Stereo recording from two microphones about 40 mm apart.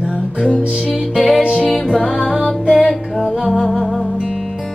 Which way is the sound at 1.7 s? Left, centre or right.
Centre.